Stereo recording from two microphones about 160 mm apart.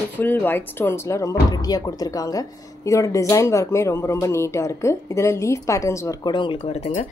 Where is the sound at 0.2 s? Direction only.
15° left (ahead or behind); by 6.9 s 40° left (ahead or behind).